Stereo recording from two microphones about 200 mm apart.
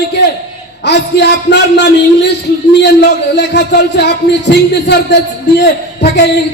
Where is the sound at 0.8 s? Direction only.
60° left (ahead or behind).